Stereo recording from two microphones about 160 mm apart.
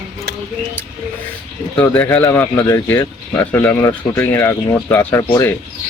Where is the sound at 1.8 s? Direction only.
10° left (ahead or behind).